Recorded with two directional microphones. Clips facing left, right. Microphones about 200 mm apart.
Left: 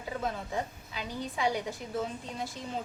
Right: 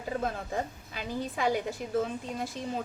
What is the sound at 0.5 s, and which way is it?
Speech, 45° right (ahead or behind).